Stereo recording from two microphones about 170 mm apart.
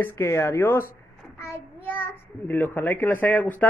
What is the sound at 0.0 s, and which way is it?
A child's voice, 15° left (ahead or behind).